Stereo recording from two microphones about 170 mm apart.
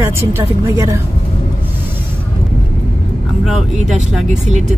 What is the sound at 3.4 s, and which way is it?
Speech, centre (ahead or behind).